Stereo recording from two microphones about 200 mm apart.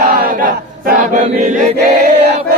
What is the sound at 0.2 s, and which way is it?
Chant, 45° right (ahead or behind).